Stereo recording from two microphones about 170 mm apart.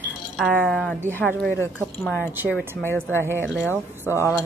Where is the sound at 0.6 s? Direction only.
5° left (ahead or behind).